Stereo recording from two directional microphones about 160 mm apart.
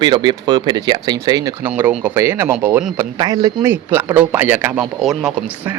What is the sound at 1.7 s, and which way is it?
Speech, 10° right (ahead or behind).